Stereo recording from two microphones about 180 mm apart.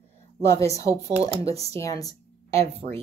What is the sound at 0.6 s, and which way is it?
Speech, 15° left (ahead or behind).